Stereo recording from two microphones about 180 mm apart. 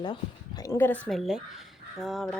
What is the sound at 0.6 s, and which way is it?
A woman's voice, 10° left (ahead or behind).